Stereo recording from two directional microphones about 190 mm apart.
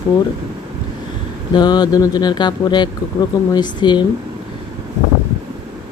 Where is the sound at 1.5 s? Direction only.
20° left (ahead or behind).